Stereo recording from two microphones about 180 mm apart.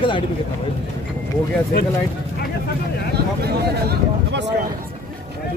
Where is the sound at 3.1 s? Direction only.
65° right (ahead or behind).